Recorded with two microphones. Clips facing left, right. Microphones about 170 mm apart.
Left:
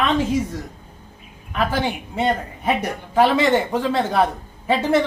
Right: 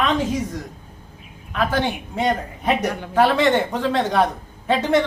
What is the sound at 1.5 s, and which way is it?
A woman's voice, 10° left (ahead or behind).